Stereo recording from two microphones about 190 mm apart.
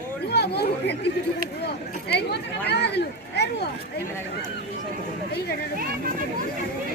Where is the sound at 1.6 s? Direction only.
60° left (ahead or behind).